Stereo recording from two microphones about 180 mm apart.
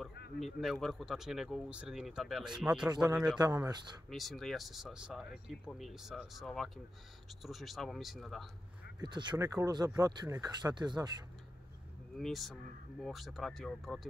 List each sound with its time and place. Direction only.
0.4 s speech: centre (ahead or behind)
3.3 s speech: 20° right (ahead or behind)
4.1 s speech: centre (ahead or behind)
9.0 s speech: 25° right (ahead or behind)
12.2 s speech: centre (ahead or behind)